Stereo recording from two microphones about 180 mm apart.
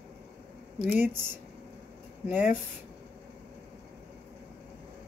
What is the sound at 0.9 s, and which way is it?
Speech, 10° right (ahead or behind).